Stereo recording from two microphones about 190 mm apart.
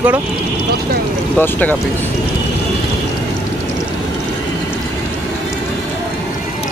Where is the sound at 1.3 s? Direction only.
10° left (ahead or behind).